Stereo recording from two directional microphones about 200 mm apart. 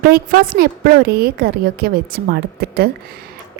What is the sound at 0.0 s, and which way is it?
A woman's voice, 45° right (ahead or behind).